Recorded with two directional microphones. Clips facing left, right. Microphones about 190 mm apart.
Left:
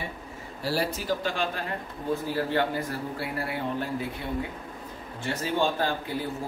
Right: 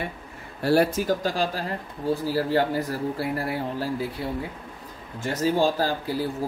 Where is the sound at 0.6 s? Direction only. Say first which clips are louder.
Right 8 dB; 55° right (ahead or behind); by 3.9 s 40° right (ahead or behind).